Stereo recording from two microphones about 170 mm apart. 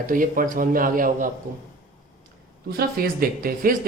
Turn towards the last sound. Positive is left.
turn(degrees=-60)  # may be behind; listen again after turning